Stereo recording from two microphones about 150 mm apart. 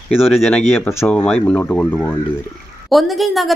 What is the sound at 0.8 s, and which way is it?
Speech, 15° left (ahead or behind).